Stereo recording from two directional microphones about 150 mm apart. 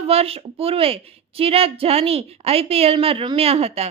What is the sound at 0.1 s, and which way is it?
A woman's voice, 40° right (ahead or behind).